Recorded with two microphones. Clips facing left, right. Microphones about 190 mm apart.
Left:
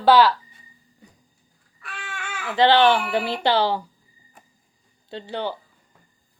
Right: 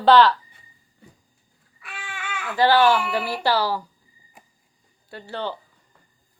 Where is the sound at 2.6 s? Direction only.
20° left (ahead or behind).